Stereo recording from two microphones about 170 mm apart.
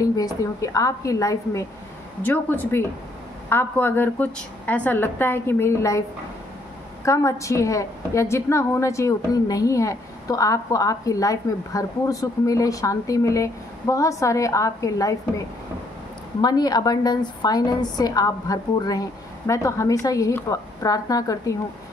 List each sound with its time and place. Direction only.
0.0 s a woman's voice: 20° left (ahead or behind)
7.1 s a woman's voice: 20° left (ahead or behind)